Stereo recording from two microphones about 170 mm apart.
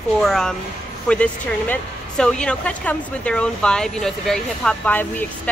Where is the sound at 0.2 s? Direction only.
5° left (ahead or behind).